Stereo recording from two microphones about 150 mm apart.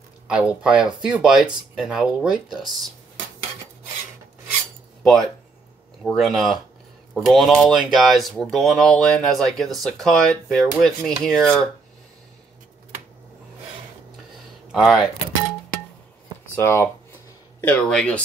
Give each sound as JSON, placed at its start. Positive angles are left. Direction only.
{"t": 0.3, "sound": "speech", "side_deg": -5}
{"t": 5.0, "sound": "speech", "side_deg": 0}
{"t": 14.7, "sound": "speech", "side_deg": 0}
{"t": 16.5, "sound": "speech", "side_deg": 15}